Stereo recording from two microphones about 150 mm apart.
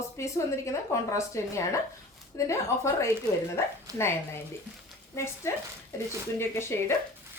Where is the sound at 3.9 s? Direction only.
25° right (ahead or behind).